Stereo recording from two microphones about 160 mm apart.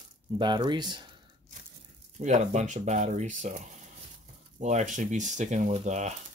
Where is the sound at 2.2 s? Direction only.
45° right (ahead or behind).